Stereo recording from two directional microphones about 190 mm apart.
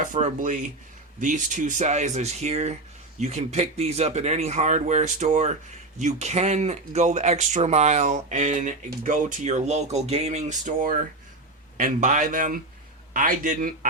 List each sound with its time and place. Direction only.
0.0 s speech: 45° right (ahead or behind)